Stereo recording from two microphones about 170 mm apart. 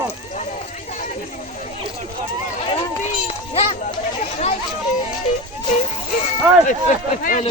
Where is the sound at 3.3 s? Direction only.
35° left (ahead or behind).